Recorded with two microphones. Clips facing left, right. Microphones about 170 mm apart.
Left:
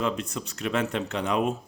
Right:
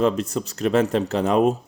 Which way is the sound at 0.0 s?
40° right (ahead or behind).